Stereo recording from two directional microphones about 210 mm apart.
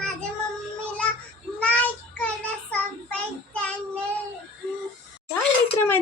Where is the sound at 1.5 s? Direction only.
5° left (ahead or behind).